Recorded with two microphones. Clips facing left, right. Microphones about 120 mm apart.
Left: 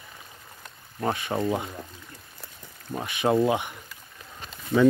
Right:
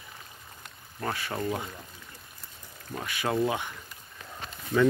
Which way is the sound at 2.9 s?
20° left (ahead or behind).